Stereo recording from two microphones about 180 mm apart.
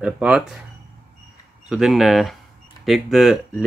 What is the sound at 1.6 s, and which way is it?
Speech, 5° right (ahead or behind).